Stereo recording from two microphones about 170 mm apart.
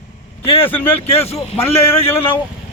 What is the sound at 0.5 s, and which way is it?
Speech, 10° left (ahead or behind).